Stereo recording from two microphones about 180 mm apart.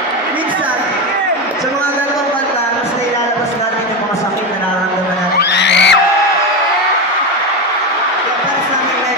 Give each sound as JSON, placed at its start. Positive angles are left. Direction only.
{"t": 5.4, "sound": "music", "side_deg": 75}